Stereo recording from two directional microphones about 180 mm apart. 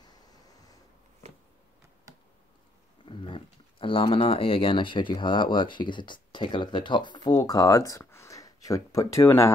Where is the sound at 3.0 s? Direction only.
30° left (ahead or behind).